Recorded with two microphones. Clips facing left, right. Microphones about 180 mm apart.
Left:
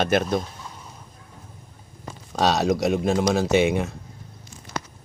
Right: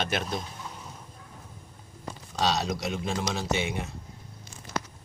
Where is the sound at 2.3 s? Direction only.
55° left (ahead or behind).